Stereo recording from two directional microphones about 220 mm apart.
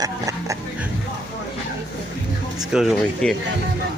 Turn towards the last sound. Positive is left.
turn(degrees=0)  # may be behind; listen again after turning